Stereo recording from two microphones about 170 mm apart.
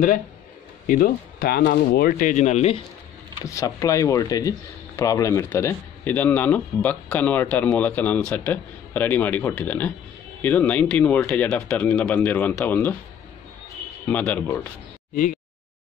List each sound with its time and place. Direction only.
0.8 s speech: 55° left (ahead or behind); by 2.8 s 40° left (ahead or behind)
3.4 s speech: 20° left (ahead or behind)
14.0 s speech: 10° left (ahead or behind)